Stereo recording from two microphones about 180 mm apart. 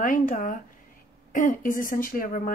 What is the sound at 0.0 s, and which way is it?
Speech, 45° left (ahead or behind).